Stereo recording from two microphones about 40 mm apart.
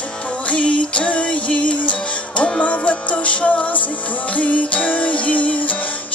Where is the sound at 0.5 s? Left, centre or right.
Left.